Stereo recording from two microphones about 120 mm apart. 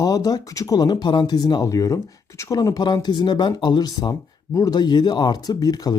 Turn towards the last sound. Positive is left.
turn(degrees=30)  # may be behind; listen again after turning